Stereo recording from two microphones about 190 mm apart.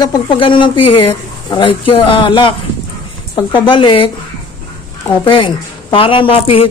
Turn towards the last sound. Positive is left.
turn(degrees=30)  # may be behind; listen again after turning